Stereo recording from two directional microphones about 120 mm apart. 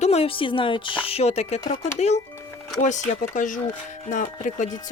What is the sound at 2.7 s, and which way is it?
Speech, 90° left.